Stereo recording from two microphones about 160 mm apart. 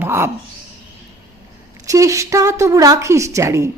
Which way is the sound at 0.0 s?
15° right (ahead or behind).